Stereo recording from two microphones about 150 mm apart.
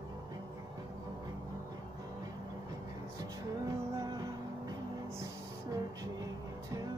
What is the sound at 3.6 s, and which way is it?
Music, 25° right (ahead or behind).